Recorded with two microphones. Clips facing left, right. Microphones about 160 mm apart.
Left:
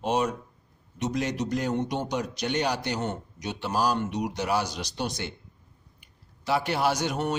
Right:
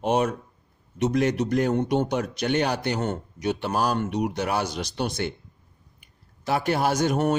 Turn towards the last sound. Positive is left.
turn(degrees=-50)  # may be behind; listen again after turning